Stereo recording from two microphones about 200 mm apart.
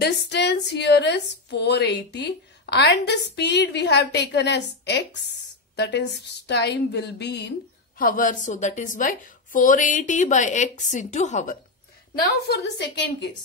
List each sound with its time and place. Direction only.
0.0 s a woman's voice: 55° left (ahead or behind)
8.0 s a woman's voice: 45° left (ahead or behind)
12.4 s a woman's voice: 55° left (ahead or behind)